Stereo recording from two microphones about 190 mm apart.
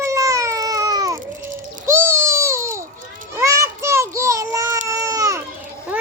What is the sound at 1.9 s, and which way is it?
Baby cry, 15° right (ahead or behind).